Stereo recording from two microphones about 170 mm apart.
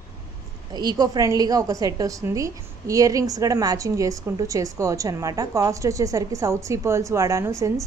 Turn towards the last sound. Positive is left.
turn(degrees=-20)  # may be behind; listen again after turning